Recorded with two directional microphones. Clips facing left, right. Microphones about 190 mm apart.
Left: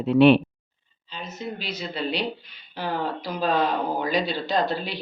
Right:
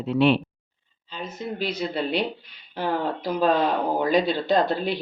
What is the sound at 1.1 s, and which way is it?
Speech, 55° right (ahead or behind).